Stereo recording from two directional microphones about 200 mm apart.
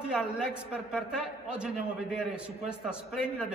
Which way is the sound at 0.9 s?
5° right (ahead or behind).